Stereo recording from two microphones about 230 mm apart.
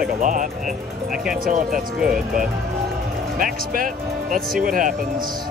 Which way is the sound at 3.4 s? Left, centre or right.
Right.